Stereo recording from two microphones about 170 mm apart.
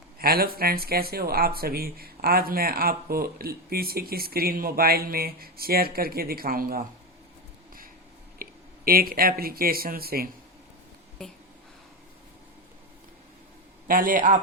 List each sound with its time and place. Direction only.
0.2 s speech: 60° right (ahead or behind)
8.4 s speech: 60° right (ahead or behind)
11.2 s a sound: 5° left (ahead or behind)
13.8 s a man's voice: 55° right (ahead or behind)